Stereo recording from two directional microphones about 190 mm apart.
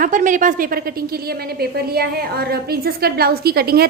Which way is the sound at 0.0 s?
45° right (ahead or behind).